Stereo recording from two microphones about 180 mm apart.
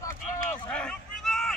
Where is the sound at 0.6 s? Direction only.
5° left (ahead or behind).